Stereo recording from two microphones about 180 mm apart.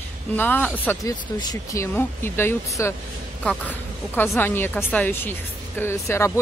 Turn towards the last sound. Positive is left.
turn(degrees=15)  # may be behind; listen again after turning